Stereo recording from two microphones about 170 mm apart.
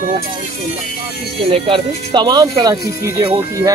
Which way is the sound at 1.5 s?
30° right (ahead or behind).